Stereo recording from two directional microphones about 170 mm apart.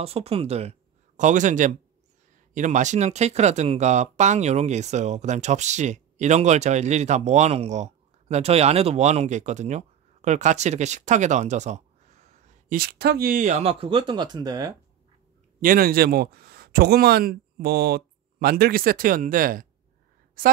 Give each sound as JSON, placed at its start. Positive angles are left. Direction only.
{"t": 0.0, "sound": "speech", "side_deg": -35}
{"t": 15.6, "sound": "speech", "side_deg": -60}